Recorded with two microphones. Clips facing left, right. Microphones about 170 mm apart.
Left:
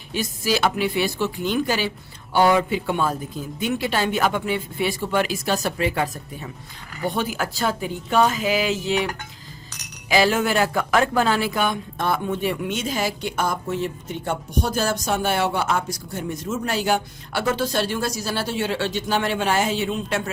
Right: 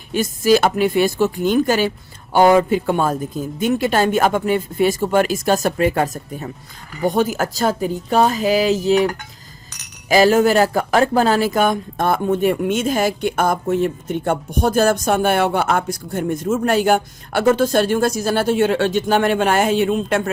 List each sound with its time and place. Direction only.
0.1 s speech: 50° right (ahead or behind)
10.1 s speech: 45° right (ahead or behind)